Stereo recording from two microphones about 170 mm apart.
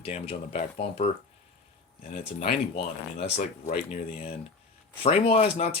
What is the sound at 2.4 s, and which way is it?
Speech, 35° left (ahead or behind).